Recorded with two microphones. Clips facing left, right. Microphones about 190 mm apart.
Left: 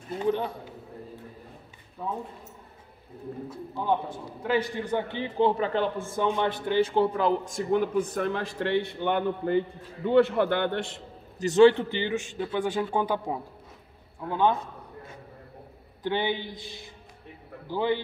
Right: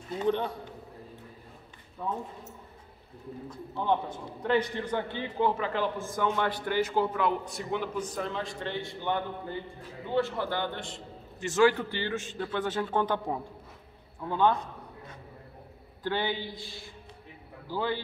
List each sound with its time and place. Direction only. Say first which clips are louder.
0.2 s a man's voice: left 1 dB; 5° left (ahead or behind)
2.0 s a man's voice: left 1 dB; 5° left (ahead or behind)
3.4 s a man's voice: left 1 dB; 5° left (ahead or behind)
5.5 s speech: left 4 dB; 35° left (ahead or behind)
6.2 s a man's voice: left 2 dB; 20° left (ahead or behind)
6.9 s speech: left 4 dB; 35° left (ahead or behind); by 11.0 s 60° left (ahead or behind)
11.3 s a man's voice: left 6 dB; 35° left (ahead or behind); by 14.6 s 15° left (ahead or behind)
16.0 s a man's voice: left 3 dB; 20° left (ahead or behind)